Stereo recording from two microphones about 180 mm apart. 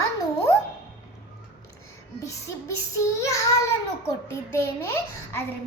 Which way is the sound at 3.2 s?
15° left (ahead or behind).